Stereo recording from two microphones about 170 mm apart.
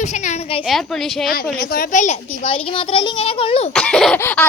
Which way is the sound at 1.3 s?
60° left (ahead or behind).